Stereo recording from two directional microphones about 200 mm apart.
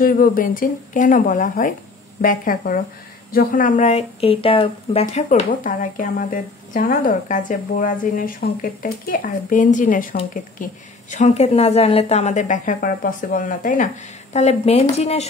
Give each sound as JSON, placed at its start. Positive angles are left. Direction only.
{"t": 0.0, "sound": "a woman's voice", "side_deg": 45}
{"t": 5.0, "sound": "a woman's voice", "side_deg": 40}